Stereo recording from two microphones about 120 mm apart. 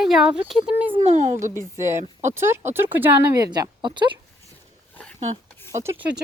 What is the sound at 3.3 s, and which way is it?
Speech, 35° right (ahead or behind).